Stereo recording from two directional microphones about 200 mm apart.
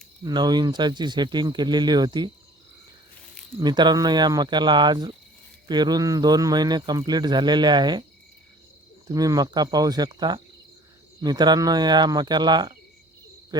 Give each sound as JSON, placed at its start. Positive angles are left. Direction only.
{"t": 0.2, "sound": "speech", "side_deg": -20}
{"t": 3.6, "sound": "speech", "side_deg": -20}
{"t": 9.0, "sound": "speech", "side_deg": -20}
{"t": 13.5, "sound": "hoot", "side_deg": -20}